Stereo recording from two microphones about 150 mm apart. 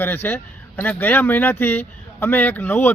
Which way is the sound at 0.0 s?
15° left (ahead or behind).